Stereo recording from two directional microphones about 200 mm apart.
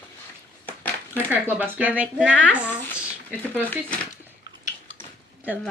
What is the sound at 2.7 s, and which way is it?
Speech, 10° left (ahead or behind).